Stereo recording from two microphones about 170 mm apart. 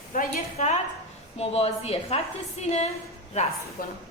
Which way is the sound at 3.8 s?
55° left (ahead or behind).